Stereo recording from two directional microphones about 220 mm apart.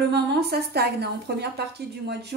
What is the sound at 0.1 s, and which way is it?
Speech, 50° right (ahead or behind).